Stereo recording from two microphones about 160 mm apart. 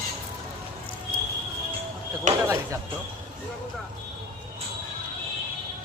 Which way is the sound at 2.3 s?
50° right (ahead or behind).